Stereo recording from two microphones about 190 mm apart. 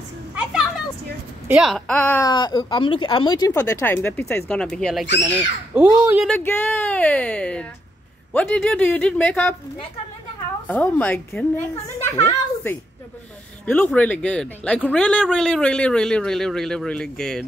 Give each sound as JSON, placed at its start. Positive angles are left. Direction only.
{"t": 0.4, "sound": "a sound", "side_deg": -5}
{"t": 1.5, "sound": "speech", "side_deg": 0}
{"t": 2.3, "sound": "speech", "side_deg": 25}
{"t": 5.8, "sound": "speech", "side_deg": -10}
{"t": 6.2, "sound": "speech", "side_deg": 10}
{"t": 10.7, "sound": "a man's voice", "side_deg": 10}